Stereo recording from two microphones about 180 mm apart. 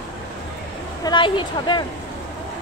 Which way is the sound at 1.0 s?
25° left (ahead or behind).